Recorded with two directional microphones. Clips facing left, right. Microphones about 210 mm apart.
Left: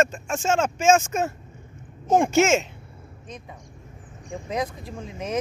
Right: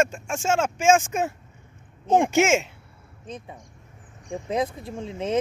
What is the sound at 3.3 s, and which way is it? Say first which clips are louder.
A woman's voice: right 4 dB; 30° right (ahead or behind).